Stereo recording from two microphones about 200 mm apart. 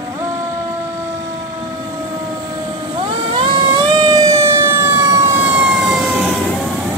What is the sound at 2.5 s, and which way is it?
Vehicle, 25° right (ahead or behind).